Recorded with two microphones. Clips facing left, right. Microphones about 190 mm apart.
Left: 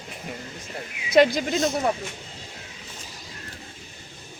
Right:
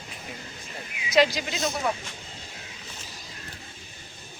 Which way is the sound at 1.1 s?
55° left (ahead or behind).